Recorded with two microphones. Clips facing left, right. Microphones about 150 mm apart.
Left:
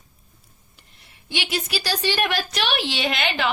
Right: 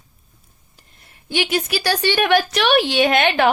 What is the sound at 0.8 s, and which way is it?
A woman's voice, 45° right (ahead or behind).